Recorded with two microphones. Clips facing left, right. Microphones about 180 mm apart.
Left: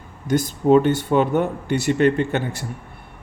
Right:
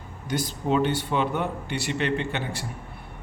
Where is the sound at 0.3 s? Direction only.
50° left (ahead or behind).